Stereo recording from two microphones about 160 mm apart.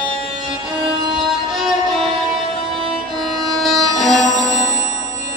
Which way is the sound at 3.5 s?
Centre (ahead or behind).